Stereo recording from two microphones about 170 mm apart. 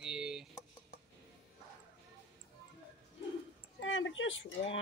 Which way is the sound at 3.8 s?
90° left.